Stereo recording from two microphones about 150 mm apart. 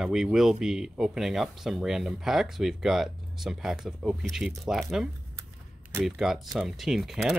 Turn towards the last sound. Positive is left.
turn(degrees=-5)  # may be behind; listen again after turning